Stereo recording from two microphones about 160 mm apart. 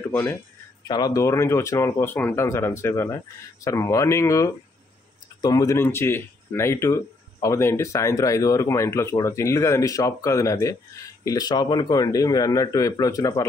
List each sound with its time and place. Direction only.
0.1 s speech: 15° left (ahead or behind)
0.8 s speech: 25° left (ahead or behind)